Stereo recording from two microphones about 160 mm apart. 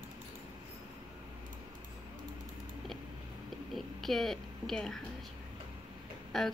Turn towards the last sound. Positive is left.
turn(degrees=0)  # may be behind; listen again after turning